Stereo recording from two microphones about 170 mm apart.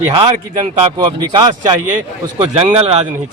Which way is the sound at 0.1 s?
30° right (ahead or behind).